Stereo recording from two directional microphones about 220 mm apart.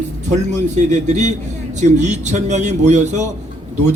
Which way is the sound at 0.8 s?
35° right (ahead or behind).